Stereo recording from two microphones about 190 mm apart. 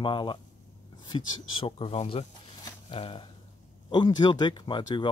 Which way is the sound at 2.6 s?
30° left (ahead or behind).